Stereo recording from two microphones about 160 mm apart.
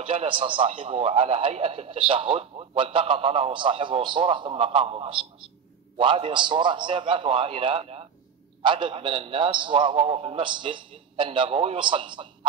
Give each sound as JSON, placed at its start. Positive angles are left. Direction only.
{"t": 0.0, "sound": "a man's voice", "side_deg": -35}